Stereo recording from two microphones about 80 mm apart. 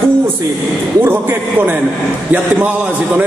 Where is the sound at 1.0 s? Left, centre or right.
Right.